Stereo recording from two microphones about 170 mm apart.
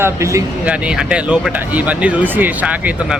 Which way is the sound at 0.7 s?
5° right (ahead or behind).